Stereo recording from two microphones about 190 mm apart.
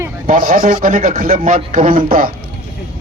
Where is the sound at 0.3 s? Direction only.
45° right (ahead or behind).